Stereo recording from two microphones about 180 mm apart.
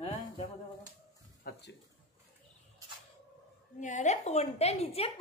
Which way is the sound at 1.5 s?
65° left (ahead or behind).